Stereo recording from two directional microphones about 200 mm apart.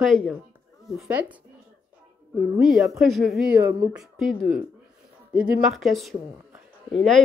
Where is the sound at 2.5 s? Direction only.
5° right (ahead or behind).